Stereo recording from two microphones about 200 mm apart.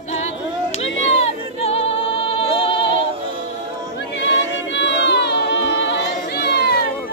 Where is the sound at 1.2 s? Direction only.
30° left (ahead or behind).